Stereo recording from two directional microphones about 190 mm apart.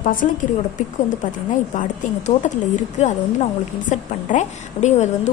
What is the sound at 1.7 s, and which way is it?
A woman's voice, 40° left (ahead or behind).